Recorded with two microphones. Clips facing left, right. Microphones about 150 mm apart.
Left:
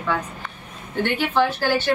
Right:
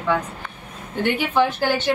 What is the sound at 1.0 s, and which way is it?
Speech, 15° right (ahead or behind).